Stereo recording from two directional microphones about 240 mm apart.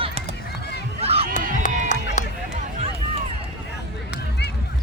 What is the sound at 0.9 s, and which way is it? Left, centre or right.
Run, right.